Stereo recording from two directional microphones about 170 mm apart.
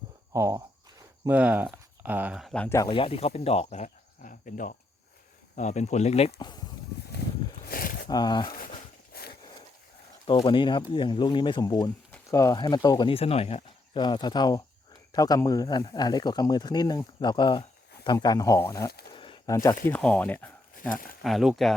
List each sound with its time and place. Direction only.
0.3 s a sound: 15° right (ahead or behind)
1.4 s speech: 10° right (ahead or behind)
2.7 s speech: 25° left (ahead or behind)
7.7 s a sound: 60° left (ahead or behind)
8.0 s speech: 25° left (ahead or behind)
9.1 s horse: 60° left (ahead or behind)
10.2 s speech: 30° left (ahead or behind)
19.1 s a sound: 30° left (ahead or behind)
19.5 s speech: 20° left (ahead or behind)
19.9 s speech: 10° left (ahead or behind)
20.9 s speech: 55° left (ahead or behind)
21.2 s speech: centre (ahead or behind)